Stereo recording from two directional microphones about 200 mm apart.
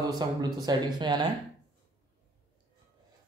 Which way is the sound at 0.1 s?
20° right (ahead or behind).